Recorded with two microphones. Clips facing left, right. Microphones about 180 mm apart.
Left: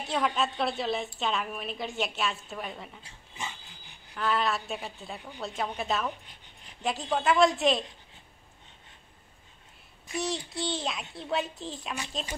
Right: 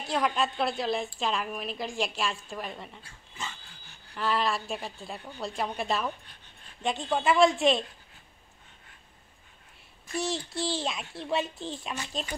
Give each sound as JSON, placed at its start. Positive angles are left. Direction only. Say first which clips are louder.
{"t": 0.1, "sound": "a child's voice", "louder": "right 1 dB", "side_deg": 0}
{"t": 3.0, "sound": "dog", "louder": "left 1 dB", "side_deg": 15}
{"t": 4.1, "sound": "a child's voice", "louder": "even", "side_deg": 0}
{"t": 10.1, "sound": "a child's voice", "louder": "right 1 dB", "side_deg": 0}